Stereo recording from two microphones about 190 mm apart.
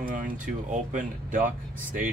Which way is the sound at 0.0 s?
45° right (ahead or behind).